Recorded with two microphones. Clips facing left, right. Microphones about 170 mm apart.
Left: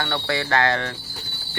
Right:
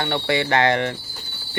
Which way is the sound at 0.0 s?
20° right (ahead or behind).